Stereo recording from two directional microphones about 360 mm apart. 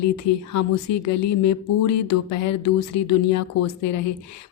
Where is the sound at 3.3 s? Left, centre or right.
Left.